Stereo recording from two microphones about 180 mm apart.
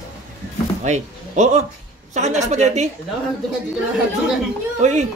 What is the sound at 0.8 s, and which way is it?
A man's voice, 40° right (ahead or behind).